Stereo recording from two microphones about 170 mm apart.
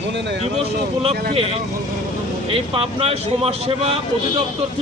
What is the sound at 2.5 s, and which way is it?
Speech, 35° right (ahead or behind).